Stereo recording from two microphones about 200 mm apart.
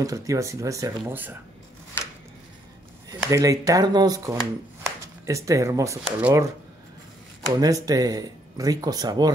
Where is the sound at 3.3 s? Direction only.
15° right (ahead or behind).